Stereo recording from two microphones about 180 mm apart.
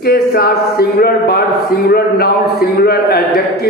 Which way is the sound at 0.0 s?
60° left (ahead or behind).